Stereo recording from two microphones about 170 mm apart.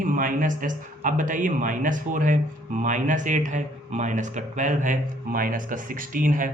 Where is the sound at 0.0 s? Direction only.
50° right (ahead or behind).